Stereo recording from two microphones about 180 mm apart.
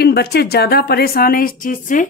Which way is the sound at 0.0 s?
65° left (ahead or behind).